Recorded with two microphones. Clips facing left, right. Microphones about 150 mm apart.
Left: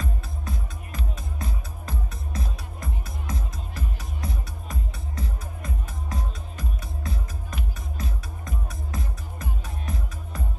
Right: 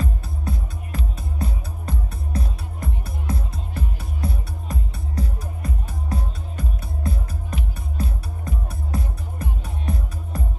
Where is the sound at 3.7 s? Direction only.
30° right (ahead or behind).